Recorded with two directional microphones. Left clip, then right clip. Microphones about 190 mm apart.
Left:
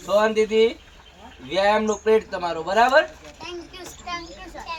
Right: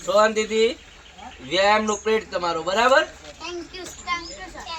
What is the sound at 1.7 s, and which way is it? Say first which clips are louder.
Speech: left 1 dB; 20° left (ahead or behind).